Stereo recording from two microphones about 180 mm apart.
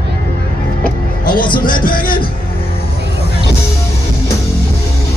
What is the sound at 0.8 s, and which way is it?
Music, 50° left (ahead or behind).